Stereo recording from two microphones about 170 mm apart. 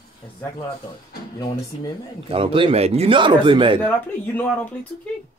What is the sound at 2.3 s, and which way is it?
Speech, 30° right (ahead or behind).